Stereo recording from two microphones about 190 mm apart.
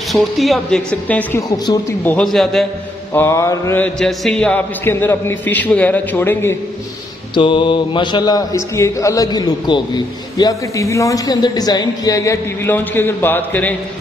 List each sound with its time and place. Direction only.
0.1 s speech: centre (ahead or behind)
2.3 s speech: centre (ahead or behind)
3.1 s speech: 15° left (ahead or behind)
7.3 s speech: 25° left (ahead or behind); by 13.7 s 10° left (ahead or behind)